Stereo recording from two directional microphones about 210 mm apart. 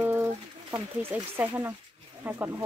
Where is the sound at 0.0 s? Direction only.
10° right (ahead or behind).